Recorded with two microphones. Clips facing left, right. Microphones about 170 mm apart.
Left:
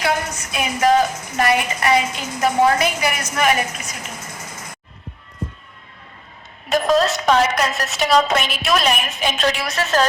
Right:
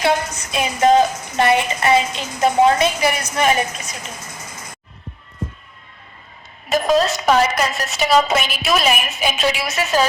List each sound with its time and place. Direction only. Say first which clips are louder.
0.0 s a woman's voice: right 3 dB; 25° right (ahead or behind)
6.7 s a woman's voice: even; centre (ahead or behind)